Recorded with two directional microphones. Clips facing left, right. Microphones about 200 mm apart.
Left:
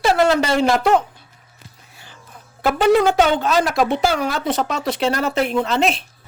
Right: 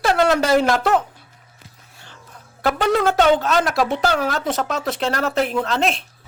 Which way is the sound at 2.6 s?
5° left (ahead or behind).